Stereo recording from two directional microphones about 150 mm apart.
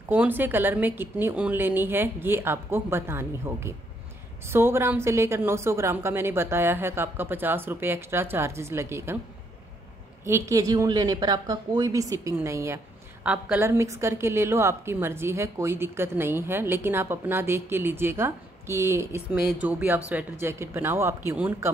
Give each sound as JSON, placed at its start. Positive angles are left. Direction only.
{"t": 0.1, "sound": "a woman's voice", "side_deg": -15}
{"t": 10.2, "sound": "a woman's voice", "side_deg": -20}
{"t": 13.7, "sound": "a woman's voice", "side_deg": -20}